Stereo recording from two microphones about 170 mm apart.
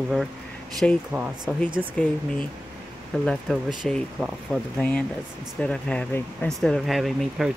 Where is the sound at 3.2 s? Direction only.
Centre (ahead or behind).